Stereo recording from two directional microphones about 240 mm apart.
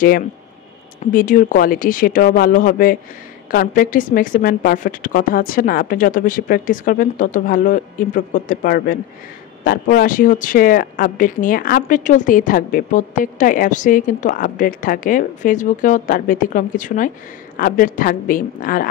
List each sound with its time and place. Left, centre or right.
1.1 s speech: left